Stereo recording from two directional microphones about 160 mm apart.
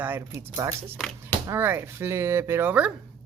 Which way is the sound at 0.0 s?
15° right (ahead or behind).